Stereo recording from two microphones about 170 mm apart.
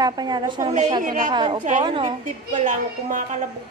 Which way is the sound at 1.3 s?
30° right (ahead or behind).